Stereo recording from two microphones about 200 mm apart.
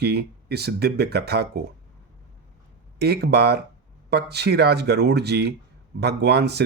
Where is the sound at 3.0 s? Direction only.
55° right (ahead or behind).